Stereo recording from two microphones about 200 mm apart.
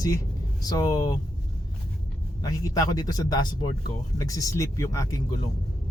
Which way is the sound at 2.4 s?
15° left (ahead or behind).